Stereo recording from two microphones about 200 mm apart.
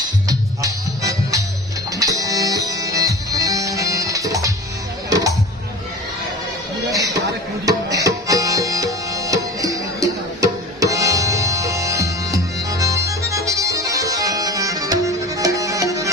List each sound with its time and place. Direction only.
0.3 s music: 15° right (ahead or behind)
6.9 s a sound: 15° right (ahead or behind)
7.6 s music: 15° right (ahead or behind)